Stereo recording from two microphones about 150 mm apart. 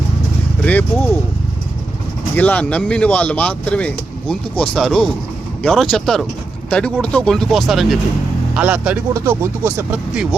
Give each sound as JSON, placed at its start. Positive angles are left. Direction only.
{"t": 0.6, "sound": "speech", "side_deg": 10}
{"t": 2.3, "sound": "speech", "side_deg": 10}